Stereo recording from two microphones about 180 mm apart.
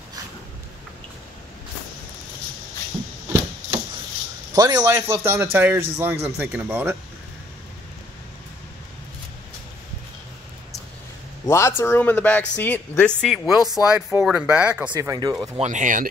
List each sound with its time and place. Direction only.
4.6 s a man's voice: 20° right (ahead or behind)
11.4 s speech: 15° left (ahead or behind)
13.2 s a man's voice: 5° right (ahead or behind)
15.0 s speech: 20° right (ahead or behind)
15.6 s speech: 45° right (ahead or behind)